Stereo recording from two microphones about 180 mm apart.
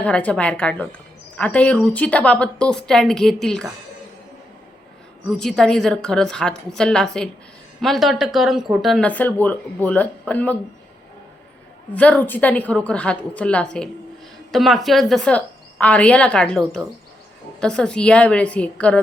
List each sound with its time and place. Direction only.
0.0 s a woman's voice: 5° left (ahead or behind)
5.4 s a woman's voice: 5° left (ahead or behind)
11.9 s a woman's voice: 10° left (ahead or behind)